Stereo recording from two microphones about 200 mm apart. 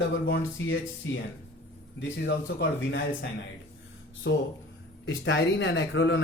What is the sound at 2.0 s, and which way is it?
Speech, 60° left (ahead or behind).